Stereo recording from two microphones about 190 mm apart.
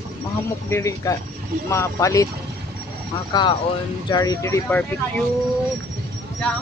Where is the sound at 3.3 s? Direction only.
20° left (ahead or behind).